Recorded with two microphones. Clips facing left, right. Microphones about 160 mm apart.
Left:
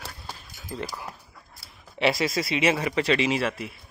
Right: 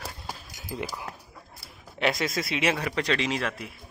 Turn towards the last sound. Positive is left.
turn(degrees=0)  # may be behind; listen again after turning